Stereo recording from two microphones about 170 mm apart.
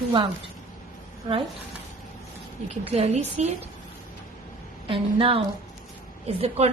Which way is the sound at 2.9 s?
40° right (ahead or behind).